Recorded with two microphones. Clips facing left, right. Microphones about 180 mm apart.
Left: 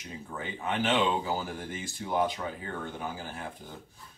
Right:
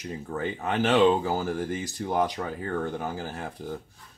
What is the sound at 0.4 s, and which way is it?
Speech, 45° right (ahead or behind).